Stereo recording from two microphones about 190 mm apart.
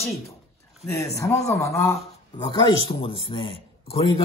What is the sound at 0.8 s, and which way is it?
A man's voice, 15° left (ahead or behind).